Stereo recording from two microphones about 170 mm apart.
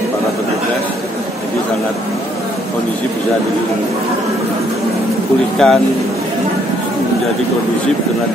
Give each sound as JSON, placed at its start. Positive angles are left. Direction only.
{"t": 5.6, "sound": "speech", "side_deg": 5}